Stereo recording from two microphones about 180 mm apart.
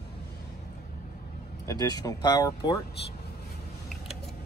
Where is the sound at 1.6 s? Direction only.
20° left (ahead or behind).